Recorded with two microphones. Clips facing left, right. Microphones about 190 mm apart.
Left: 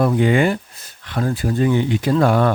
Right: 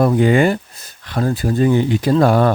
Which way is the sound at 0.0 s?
40° right (ahead or behind).